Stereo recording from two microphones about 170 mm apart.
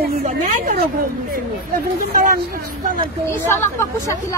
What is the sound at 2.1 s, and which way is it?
Speech, 50° right (ahead or behind).